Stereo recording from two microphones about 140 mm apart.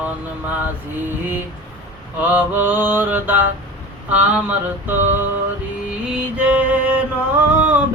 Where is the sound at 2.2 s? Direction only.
10° right (ahead or behind).